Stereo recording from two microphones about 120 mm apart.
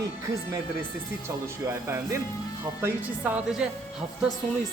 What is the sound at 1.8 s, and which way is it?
A woman's voice, 20° right (ahead or behind).